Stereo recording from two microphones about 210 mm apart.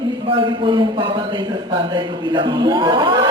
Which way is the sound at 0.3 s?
25° right (ahead or behind).